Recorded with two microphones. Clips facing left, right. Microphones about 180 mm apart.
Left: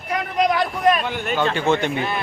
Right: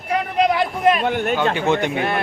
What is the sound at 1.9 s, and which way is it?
Speech, 60° right (ahead or behind).